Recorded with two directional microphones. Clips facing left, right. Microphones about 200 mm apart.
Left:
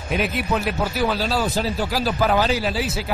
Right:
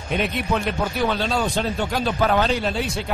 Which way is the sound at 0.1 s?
5° left (ahead or behind).